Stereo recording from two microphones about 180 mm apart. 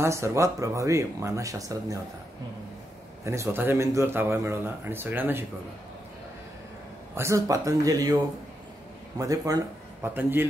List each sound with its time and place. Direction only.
0.0 s speech: 15° right (ahead or behind)
3.3 s speech: 15° right (ahead or behind)
7.2 s speech: 15° right (ahead or behind)
9.2 s speech: 20° right (ahead or behind)